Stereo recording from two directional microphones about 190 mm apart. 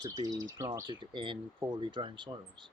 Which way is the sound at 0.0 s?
20° right (ahead or behind).